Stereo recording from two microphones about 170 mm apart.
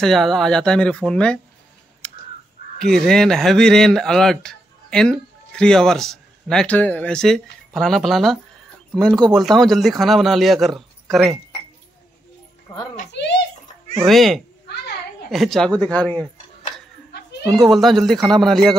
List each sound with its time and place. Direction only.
0.0 s a man's voice: centre (ahead or behind)
2.0 s crow: 5° left (ahead or behind)
2.8 s a man's voice: 5° left (ahead or behind)
13.1 s a sound: 90° left
14.0 s a man's voice: centre (ahead or behind)
17.6 s a man's voice: centre (ahead or behind)